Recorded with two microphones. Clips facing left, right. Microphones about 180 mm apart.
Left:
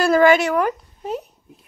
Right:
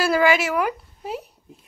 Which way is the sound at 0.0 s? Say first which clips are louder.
Left 5 dB; centre (ahead or behind).